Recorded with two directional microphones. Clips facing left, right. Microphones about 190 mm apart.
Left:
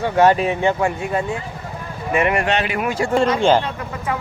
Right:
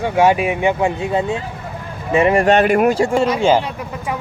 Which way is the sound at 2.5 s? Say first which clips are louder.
Right 8 dB; 50° right (ahead or behind).